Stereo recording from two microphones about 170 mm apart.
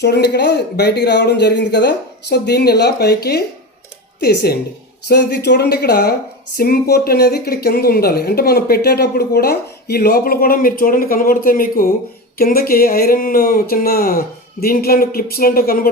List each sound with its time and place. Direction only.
0.0 s speech: 75° left (ahead or behind); by 15.9 s 60° left (ahead or behind)